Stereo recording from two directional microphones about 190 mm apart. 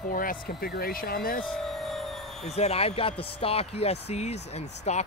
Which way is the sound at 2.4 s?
35° left (ahead or behind).